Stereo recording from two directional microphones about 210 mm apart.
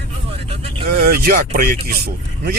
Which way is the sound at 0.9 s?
50° right (ahead or behind).